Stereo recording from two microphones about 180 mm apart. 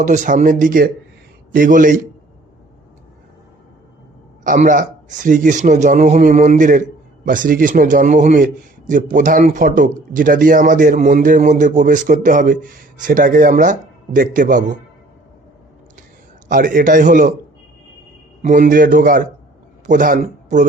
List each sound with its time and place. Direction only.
0.0 s a man's voice: 45° right (ahead or behind)
4.4 s a man's voice: 45° right (ahead or behind)
16.5 s a man's voice: 50° right (ahead or behind)
18.4 s a man's voice: 45° right (ahead or behind)